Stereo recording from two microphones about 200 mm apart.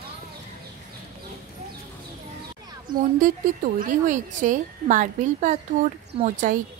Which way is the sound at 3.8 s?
40° right (ahead or behind).